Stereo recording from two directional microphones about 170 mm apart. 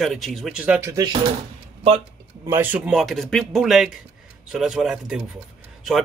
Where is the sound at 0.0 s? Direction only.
Centre (ahead or behind); by 1.1 s 20° right (ahead or behind).